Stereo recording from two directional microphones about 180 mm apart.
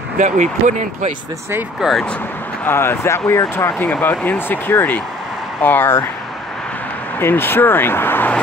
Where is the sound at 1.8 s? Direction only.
5° left (ahead or behind).